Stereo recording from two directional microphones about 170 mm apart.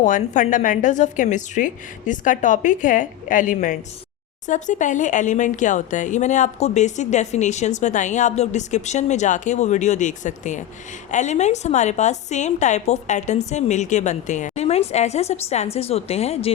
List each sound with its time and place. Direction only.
0.0 s speech: 50° left (ahead or behind)